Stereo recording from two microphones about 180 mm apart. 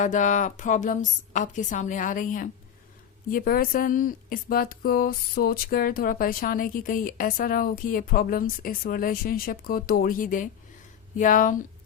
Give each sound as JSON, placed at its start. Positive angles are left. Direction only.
{"t": 0.0, "sound": "speech", "side_deg": 45}